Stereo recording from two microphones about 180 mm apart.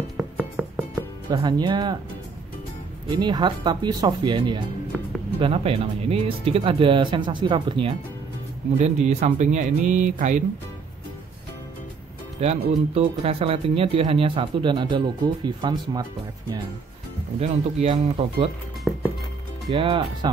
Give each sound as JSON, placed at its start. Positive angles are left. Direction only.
{"t": 0.2, "sound": "music", "side_deg": -5}
{"t": 1.3, "sound": "speech", "side_deg": -25}
{"t": 3.2, "sound": "speech", "side_deg": -25}
{"t": 12.4, "sound": "speech", "side_deg": -35}
{"t": 17.4, "sound": "speech", "side_deg": -35}
{"t": 18.9, "sound": "music", "side_deg": 0}
{"t": 19.7, "sound": "speech", "side_deg": -25}